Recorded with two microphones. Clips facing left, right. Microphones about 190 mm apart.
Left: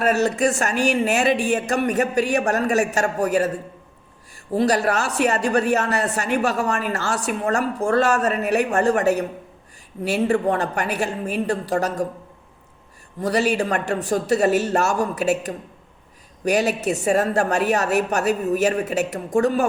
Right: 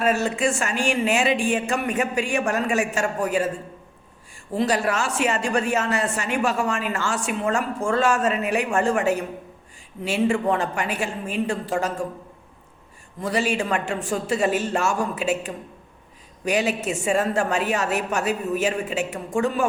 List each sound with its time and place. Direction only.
0.0 s a woman's voice: 40° left (ahead or behind)
4.6 s a woman's voice: 40° left (ahead or behind)
13.2 s a woman's voice: 40° left (ahead or behind)